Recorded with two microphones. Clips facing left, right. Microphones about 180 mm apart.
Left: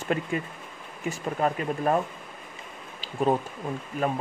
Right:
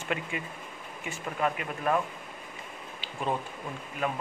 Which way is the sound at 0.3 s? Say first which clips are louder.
Left 6 dB; 40° left (ahead or behind).